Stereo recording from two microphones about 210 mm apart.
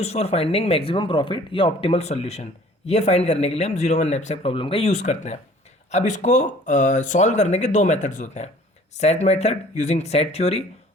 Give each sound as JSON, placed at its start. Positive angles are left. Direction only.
{"t": 0.0, "sound": "speech", "side_deg": 30}